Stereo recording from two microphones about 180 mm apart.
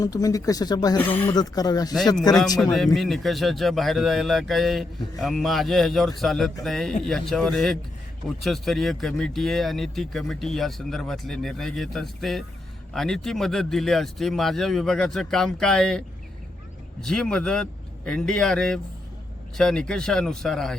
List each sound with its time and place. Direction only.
0.0 s speech: 20° left (ahead or behind)
2.7 s speech: centre (ahead or behind)